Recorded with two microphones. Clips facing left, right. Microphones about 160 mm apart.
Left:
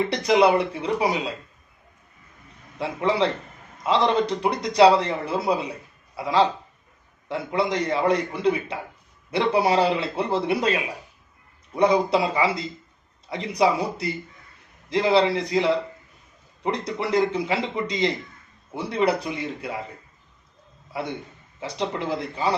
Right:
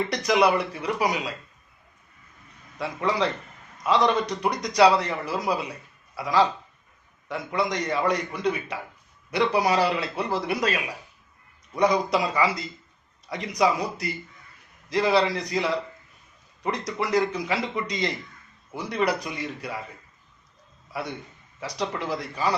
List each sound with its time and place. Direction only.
0.1 s speech: 25° left (ahead or behind)
2.7 s speech: 25° left (ahead or behind)
20.9 s a man's voice: 30° left (ahead or behind)